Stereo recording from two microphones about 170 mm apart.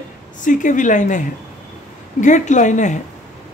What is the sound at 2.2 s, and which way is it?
Speech, 45° left (ahead or behind).